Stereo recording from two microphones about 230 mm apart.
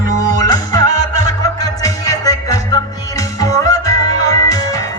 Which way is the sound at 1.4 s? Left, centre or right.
Centre.